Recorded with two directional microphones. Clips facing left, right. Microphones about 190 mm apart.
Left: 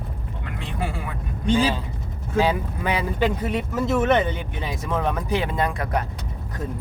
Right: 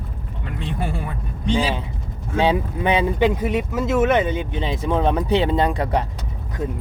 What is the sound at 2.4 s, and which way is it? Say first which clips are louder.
Speech: right 2 dB; 25° right (ahead or behind).